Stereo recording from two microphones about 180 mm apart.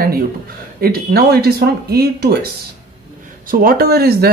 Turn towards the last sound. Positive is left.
turn(degrees=-60)  # may be behind; listen again after turning